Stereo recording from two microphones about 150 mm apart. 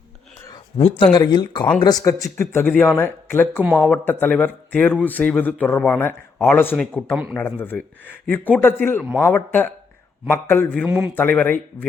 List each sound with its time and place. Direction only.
0.8 s a man's voice: 35° left (ahead or behind); by 7.0 s 10° left (ahead or behind)
7.1 s a man's voice: 5° right (ahead or behind)
7.6 s a man's voice: 10° left (ahead or behind)